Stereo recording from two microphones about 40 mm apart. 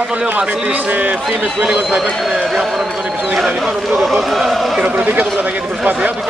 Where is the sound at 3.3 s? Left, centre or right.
Centre.